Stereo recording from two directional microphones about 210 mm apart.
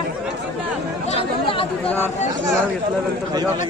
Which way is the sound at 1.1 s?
25° left (ahead or behind).